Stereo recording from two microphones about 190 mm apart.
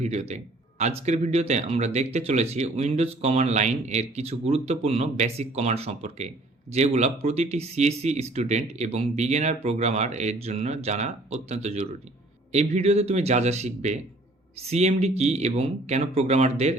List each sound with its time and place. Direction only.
0.0 s speech: 35° right (ahead or behind)